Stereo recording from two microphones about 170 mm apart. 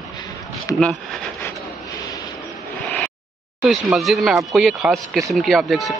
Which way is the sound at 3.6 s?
Centre (ahead or behind).